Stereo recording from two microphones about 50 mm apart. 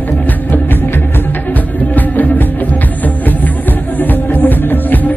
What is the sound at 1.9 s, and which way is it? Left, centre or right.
Music, left.